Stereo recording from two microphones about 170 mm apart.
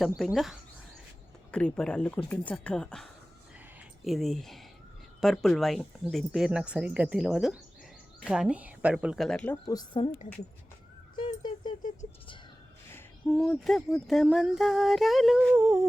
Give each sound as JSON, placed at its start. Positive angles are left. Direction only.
{"t": 0.2, "sound": "speech", "side_deg": 0}
{"t": 9.6, "sound": "a woman's voice", "side_deg": 25}
{"t": 13.3, "sound": "speech", "side_deg": 0}
{"t": 15.5, "sound": "humming", "side_deg": -15}